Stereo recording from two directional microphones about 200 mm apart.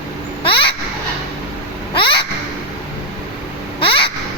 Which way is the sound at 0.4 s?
25° left (ahead or behind).